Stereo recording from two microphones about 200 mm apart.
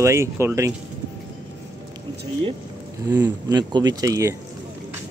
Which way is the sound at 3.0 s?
20° right (ahead or behind).